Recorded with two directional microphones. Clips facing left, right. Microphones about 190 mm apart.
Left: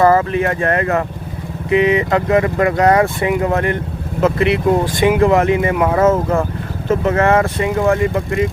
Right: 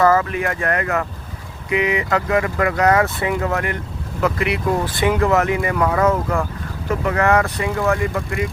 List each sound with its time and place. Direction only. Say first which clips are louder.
0.0 s speech: left 4 dB; 30° left (ahead or behind)